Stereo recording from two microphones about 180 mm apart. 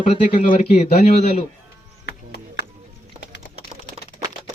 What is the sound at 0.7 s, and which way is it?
Speech, 35° left (ahead or behind).